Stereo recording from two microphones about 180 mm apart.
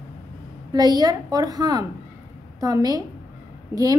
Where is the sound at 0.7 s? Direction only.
20° right (ahead or behind).